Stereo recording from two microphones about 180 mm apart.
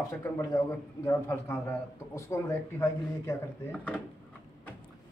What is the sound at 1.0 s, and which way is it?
A man's voice, 15° left (ahead or behind).